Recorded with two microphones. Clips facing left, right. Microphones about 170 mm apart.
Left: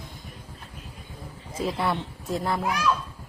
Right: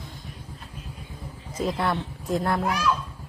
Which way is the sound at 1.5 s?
5° left (ahead or behind).